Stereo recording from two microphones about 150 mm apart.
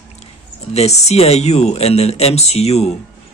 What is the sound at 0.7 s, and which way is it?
Speech, 45° left (ahead or behind).